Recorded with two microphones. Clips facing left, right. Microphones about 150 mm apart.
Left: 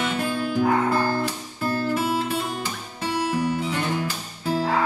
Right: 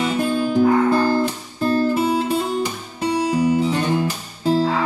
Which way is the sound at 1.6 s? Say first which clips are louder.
Right 6 dB; 25° right (ahead or behind).